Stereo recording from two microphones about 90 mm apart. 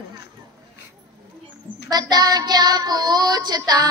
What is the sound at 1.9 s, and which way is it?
Child singing, 50° right (ahead or behind).